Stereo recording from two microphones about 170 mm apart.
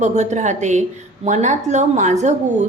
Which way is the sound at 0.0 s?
45° right (ahead or behind).